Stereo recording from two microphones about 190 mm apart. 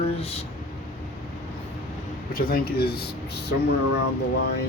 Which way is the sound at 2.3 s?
50° left (ahead or behind).